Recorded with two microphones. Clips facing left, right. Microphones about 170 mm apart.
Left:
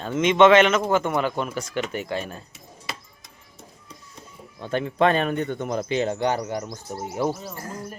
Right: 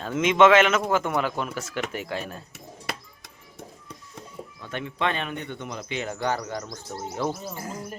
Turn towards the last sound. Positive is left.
turn(degrees=-10)  # may be behind; listen again after turning